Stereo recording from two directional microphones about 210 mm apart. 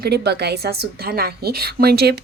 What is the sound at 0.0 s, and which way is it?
A woman's voice, 50° right (ahead or behind).